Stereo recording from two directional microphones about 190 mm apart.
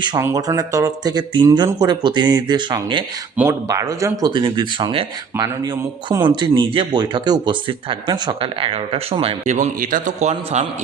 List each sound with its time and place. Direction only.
0.0 s speech: 20° right (ahead or behind)
3.3 s speech: 15° right (ahead or behind); by 10.7 s 35° right (ahead or behind)